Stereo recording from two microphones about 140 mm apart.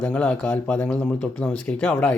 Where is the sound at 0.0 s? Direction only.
10° left (ahead or behind).